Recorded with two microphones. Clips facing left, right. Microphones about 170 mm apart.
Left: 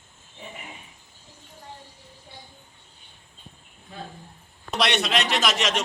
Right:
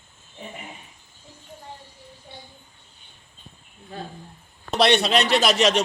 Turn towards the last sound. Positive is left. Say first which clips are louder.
# right 6 dB
turn(degrees=-35)  # may be behind; listen again after turning